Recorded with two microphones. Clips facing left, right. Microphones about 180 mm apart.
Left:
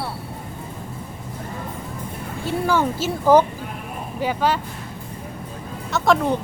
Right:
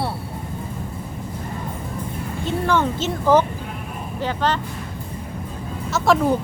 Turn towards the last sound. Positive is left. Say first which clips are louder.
# right 1 dB
turn(degrees=-5)  # may be behind; listen again after turning